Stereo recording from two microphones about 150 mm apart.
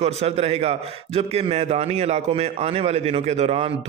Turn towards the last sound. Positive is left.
turn(degrees=-40)  # may be behind; listen again after turning